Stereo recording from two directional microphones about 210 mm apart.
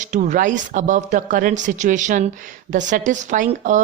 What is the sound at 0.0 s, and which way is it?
Speech, 35° right (ahead or behind).